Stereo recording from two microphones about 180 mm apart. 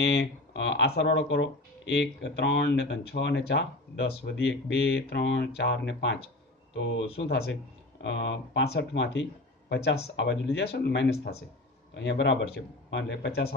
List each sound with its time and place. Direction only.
0.0 s speech: 70° left (ahead or behind)